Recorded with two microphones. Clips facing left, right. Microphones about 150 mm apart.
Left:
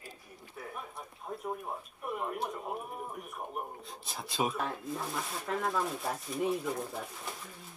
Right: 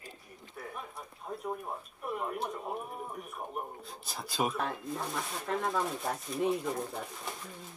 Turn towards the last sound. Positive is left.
turn(degrees=0)  # may be behind; listen again after turning